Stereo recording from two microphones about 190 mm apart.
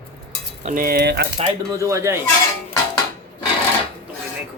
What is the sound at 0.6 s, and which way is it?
Speech, 50° right (ahead or behind).